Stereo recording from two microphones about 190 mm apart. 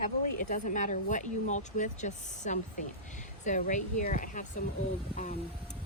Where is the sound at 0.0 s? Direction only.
40° left (ahead or behind).